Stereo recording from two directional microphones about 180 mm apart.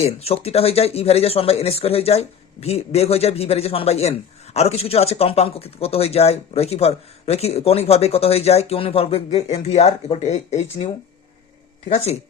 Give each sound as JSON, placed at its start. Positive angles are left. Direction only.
{"t": 0.0, "sound": "speech", "side_deg": 35}